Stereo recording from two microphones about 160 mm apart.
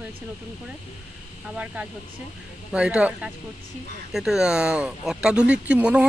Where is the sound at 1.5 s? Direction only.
10° right (ahead or behind).